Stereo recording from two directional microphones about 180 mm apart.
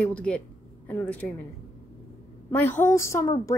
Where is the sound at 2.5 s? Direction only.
10° left (ahead or behind).